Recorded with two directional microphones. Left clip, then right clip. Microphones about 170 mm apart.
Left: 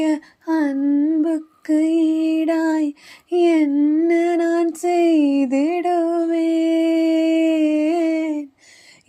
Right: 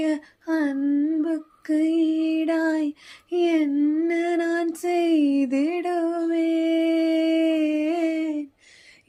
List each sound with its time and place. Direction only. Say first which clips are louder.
0.0 s humming: left 5 dB; 30° left (ahead or behind)